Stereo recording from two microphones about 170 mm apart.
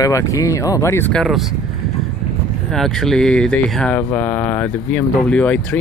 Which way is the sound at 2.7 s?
Centre (ahead or behind).